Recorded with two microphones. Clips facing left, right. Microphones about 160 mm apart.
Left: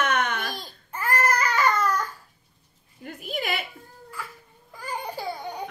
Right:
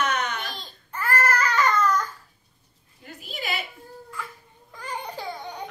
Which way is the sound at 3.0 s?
50° left (ahead or behind).